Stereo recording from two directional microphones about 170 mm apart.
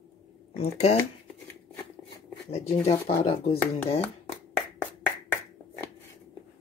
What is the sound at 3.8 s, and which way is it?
Speech, 10° left (ahead or behind).